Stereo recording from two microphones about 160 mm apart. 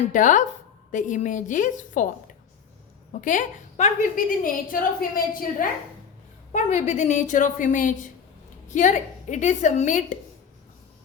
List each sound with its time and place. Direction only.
0.1 s a woman's voice: 55° left (ahead or behind)
6.5 s a woman's voice: 45° left (ahead or behind)